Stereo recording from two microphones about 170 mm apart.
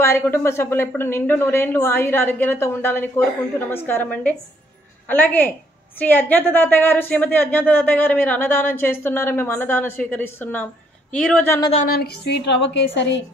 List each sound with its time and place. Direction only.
0.0 s a woman's voice: 15° left (ahead or behind)
11.7 s a woman's voice: 60° left (ahead or behind); by 13.2 s 90° left